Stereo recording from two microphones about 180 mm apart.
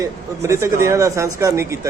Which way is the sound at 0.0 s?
15° right (ahead or behind).